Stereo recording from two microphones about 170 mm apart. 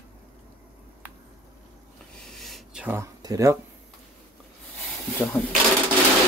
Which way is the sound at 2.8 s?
15° right (ahead or behind).